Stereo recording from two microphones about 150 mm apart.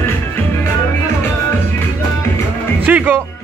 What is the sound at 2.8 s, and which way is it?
Music, 10° right (ahead or behind).